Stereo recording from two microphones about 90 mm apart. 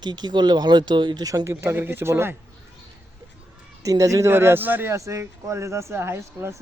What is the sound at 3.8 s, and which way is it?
Speech, 35° right (ahead or behind).